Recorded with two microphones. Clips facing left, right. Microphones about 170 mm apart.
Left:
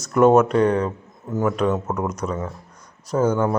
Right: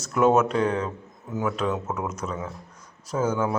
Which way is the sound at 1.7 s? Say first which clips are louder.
Left 5 dB; 35° left (ahead or behind).